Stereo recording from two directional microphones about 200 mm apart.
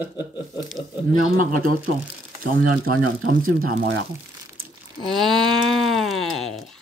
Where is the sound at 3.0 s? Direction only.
90° right.